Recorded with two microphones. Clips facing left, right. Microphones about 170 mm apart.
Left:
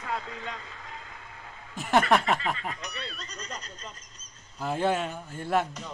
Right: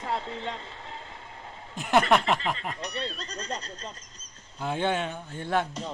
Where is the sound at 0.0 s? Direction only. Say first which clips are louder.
Right 3 dB; 30° right (ahead or behind).